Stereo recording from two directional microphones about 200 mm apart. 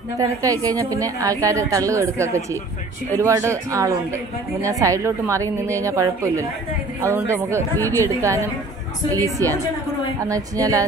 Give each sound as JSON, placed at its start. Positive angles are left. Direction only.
{"t": 0.2, "sound": "a woman's voice", "side_deg": -15}
{"t": 7.7, "sound": "a woman's voice", "side_deg": 10}
{"t": 8.0, "sound": "a woman's voice", "side_deg": -15}